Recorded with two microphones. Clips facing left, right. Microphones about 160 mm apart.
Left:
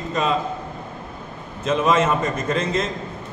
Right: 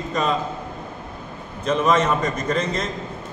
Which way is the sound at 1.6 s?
Centre (ahead or behind).